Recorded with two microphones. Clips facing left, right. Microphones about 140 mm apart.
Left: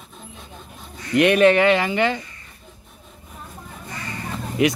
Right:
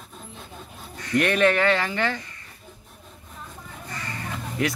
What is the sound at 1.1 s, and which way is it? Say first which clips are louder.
Speech: left 6 dB; 15° left (ahead or behind).